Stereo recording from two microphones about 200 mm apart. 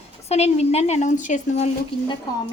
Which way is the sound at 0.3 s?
30° left (ahead or behind).